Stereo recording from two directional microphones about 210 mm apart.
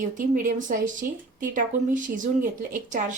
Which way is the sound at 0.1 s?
40° right (ahead or behind).